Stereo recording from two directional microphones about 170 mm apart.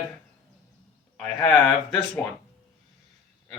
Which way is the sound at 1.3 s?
30° left (ahead or behind).